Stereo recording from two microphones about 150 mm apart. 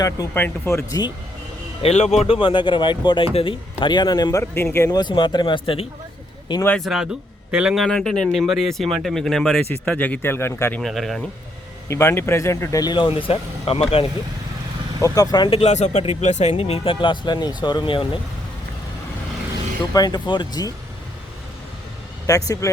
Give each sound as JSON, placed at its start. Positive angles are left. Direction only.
{"t": 0.0, "sound": "speech", "side_deg": 25}
{"t": 1.8, "sound": "speech", "side_deg": 45}
{"t": 6.7, "sound": "a man's voice", "side_deg": 0}
{"t": 10.8, "sound": "a man's voice", "side_deg": 0}
{"t": 11.9, "sound": "speech", "side_deg": 15}
{"t": 15.0, "sound": "speech", "side_deg": 25}
{"t": 15.4, "sound": "speech", "side_deg": 45}
{"t": 19.9, "sound": "speech", "side_deg": 25}
{"t": 22.3, "sound": "speech", "side_deg": 20}